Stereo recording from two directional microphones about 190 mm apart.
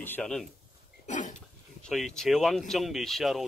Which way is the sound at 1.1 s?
40° left (ahead or behind).